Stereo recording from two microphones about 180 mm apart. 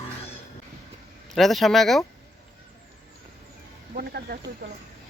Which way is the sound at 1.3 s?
Centre (ahead or behind).